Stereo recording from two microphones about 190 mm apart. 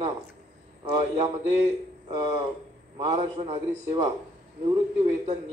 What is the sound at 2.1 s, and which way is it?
Speech, 25° right (ahead or behind).